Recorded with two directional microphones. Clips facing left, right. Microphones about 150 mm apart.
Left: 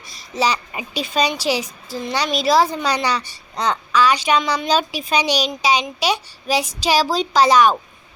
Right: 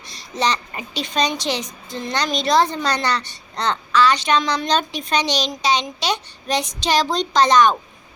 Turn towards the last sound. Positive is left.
turn(degrees=10)  # may be behind; listen again after turning